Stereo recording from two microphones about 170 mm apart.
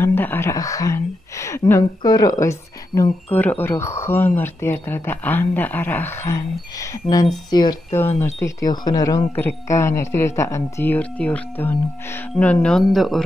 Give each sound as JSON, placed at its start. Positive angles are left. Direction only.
{"t": 0.0, "sound": "speech", "side_deg": 10}